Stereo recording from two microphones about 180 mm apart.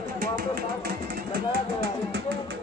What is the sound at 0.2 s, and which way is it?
Speech, 55° right (ahead or behind).